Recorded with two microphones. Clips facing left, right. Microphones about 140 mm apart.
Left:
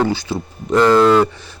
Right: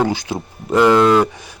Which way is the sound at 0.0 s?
15° right (ahead or behind).